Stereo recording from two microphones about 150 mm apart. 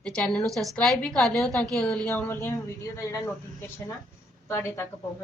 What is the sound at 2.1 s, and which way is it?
Speech, 15° left (ahead or behind).